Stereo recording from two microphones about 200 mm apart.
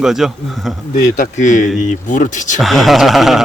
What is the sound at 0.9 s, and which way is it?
Speech, 45° left (ahead or behind).